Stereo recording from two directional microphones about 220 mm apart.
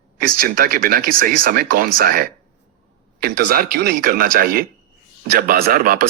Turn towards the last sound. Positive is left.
turn(degrees=-40)  # may be behind; listen again after turning